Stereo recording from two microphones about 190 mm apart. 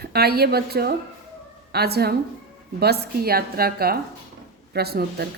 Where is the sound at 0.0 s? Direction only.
55° right (ahead or behind).